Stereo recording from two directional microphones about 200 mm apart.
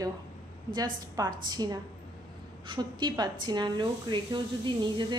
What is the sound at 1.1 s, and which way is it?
A woman's voice, 20° right (ahead or behind).